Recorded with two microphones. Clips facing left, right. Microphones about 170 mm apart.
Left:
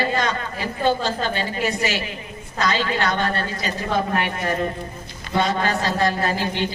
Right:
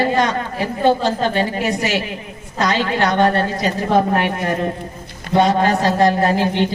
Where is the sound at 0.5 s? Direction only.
60° right (ahead or behind).